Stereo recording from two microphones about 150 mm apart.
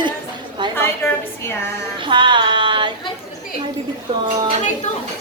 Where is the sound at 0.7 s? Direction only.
15° left (ahead or behind).